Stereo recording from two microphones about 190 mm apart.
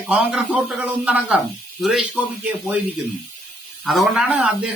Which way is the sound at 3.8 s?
5° right (ahead or behind).